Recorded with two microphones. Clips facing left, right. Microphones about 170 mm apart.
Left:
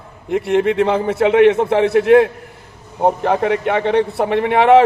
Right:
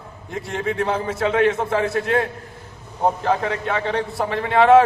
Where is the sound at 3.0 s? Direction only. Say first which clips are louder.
Left 5 dB; 65° left (ahead or behind).